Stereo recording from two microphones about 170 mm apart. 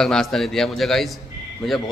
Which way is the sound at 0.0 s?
Centre (ahead or behind).